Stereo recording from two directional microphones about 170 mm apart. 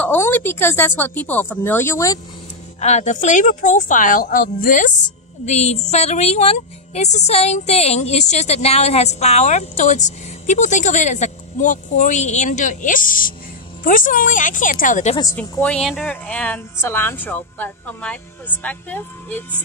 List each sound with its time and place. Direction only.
0.0 s speech: 10° left (ahead or behind)
2.8 s a woman's voice: 45° left (ahead or behind)
5.4 s a woman's voice: 40° left (ahead or behind)
15.3 s speech: 5° left (ahead or behind)